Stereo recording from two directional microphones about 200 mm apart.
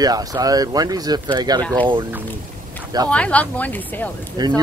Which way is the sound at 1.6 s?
5° left (ahead or behind).